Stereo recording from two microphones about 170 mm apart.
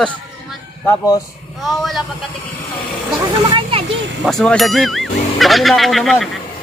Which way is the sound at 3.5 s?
30° right (ahead or behind).